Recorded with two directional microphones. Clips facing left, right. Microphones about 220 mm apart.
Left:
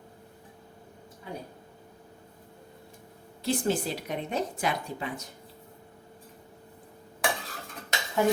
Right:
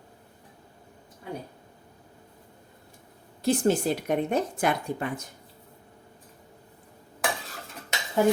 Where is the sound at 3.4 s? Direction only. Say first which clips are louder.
Right 5 dB; 50° right (ahead or behind).